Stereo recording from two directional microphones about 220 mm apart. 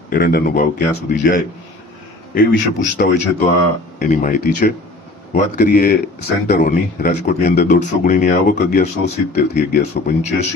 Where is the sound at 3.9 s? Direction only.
35° left (ahead or behind).